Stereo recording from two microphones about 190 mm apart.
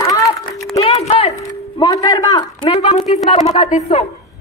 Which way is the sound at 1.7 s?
20° left (ahead or behind).